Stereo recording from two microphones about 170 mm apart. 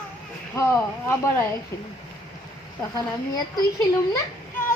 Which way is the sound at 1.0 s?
15° left (ahead or behind).